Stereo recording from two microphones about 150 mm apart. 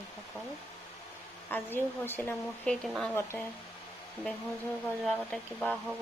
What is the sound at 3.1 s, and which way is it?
Speech, 15° left (ahead or behind).